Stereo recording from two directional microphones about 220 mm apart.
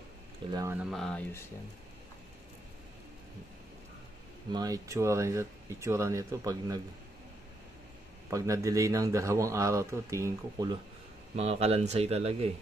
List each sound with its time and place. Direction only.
0.5 s a man's voice: 15° right (ahead or behind)
0.7 s speech: centre (ahead or behind)
4.5 s a man's voice: 15° right (ahead or behind)
8.3 s a man's voice: 15° right (ahead or behind)
11.3 s a man's voice: 30° right (ahead or behind)